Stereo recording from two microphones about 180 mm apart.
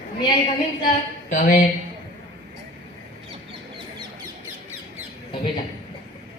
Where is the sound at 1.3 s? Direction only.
45° left (ahead or behind).